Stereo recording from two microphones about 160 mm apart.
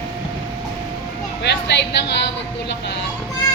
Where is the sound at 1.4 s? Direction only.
90° left.